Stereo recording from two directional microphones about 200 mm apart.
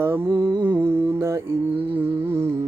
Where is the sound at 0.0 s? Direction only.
10° right (ahead or behind).